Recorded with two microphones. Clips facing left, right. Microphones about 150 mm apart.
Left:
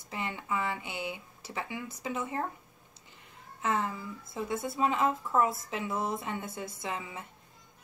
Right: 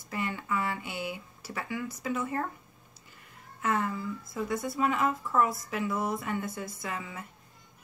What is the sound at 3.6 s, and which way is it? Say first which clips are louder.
A woman's voice: right 2 dB; 20° left (ahead or behind).